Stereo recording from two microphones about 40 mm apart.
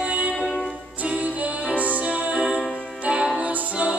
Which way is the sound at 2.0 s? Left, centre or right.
Right.